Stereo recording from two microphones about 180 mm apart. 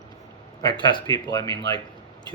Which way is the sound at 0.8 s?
25° left (ahead or behind).